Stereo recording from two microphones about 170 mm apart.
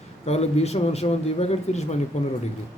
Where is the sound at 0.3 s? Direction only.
40° left (ahead or behind).